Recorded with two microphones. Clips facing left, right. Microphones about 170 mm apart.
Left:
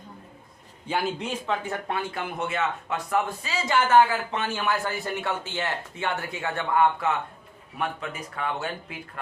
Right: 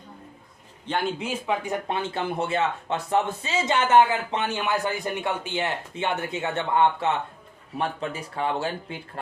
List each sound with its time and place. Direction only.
0.9 s speech: 5° left (ahead or behind); by 9.0 s 30° right (ahead or behind)